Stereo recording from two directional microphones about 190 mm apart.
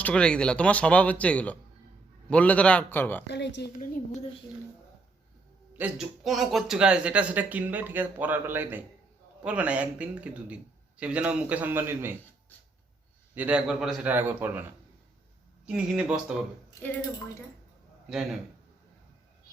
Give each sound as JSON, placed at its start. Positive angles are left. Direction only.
{"t": 0.0, "sound": "speech", "side_deg": 5}
{"t": 3.2, "sound": "a woman's voice", "side_deg": 65}
{"t": 5.7, "sound": "speech", "side_deg": -5}
{"t": 13.3, "sound": "speech", "side_deg": -5}
{"t": 18.1, "sound": "speech", "side_deg": 0}